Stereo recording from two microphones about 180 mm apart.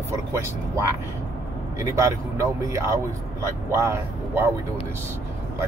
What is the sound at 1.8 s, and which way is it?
Speech, 15° right (ahead or behind).